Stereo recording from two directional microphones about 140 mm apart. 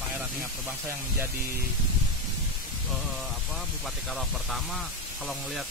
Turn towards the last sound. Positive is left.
turn(degrees=0)  # may be behind; listen again after turning